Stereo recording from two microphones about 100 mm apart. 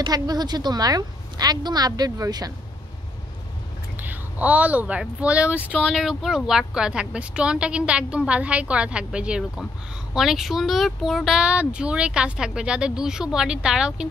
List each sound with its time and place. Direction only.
0.0 s a woman's voice: 45° right (ahead or behind)
3.9 s speech: 20° right (ahead or behind)
5.5 s speech: 20° left (ahead or behind)
5.9 s speech: centre (ahead or behind)